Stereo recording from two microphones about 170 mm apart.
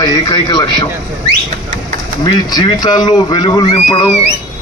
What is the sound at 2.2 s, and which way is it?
Speech, 25° left (ahead or behind).